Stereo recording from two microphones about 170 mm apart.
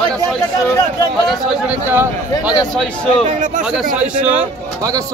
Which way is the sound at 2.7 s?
5° left (ahead or behind).